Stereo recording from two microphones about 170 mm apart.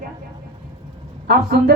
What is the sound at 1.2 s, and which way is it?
Speech, 65° right (ahead or behind).